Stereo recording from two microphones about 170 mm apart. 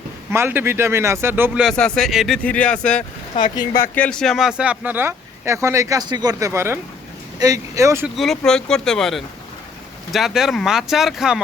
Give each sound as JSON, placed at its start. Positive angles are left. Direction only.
{"t": 0.3, "sound": "speech", "side_deg": -10}
{"t": 1.6, "sound": "speech", "side_deg": 5}
{"t": 8.0, "sound": "speech", "side_deg": 0}